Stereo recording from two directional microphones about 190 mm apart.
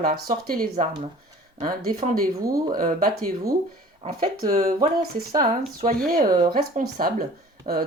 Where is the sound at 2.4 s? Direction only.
20° right (ahead or behind).